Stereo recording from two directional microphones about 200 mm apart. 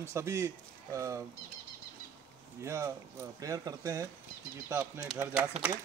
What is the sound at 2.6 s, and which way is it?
Speech, 15° right (ahead or behind).